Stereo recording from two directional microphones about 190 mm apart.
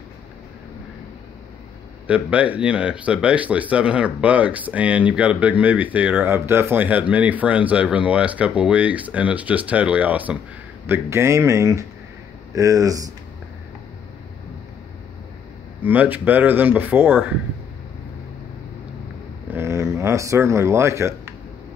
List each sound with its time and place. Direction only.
2.0 s speech: 5° right (ahead or behind)
15.8 s speech: 10° right (ahead or behind)
19.5 s a sound: 15° right (ahead or behind)